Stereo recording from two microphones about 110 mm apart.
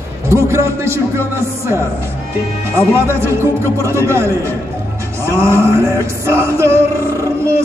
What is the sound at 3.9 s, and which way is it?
A man's voice, 25° right (ahead or behind).